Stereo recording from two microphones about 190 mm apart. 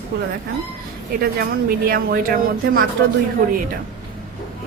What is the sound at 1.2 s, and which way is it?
Speech, 50° right (ahead or behind).